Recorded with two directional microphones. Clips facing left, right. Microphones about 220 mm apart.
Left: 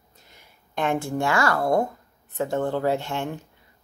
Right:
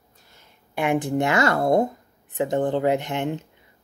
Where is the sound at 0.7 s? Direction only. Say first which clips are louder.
Right 3 dB; 15° right (ahead or behind).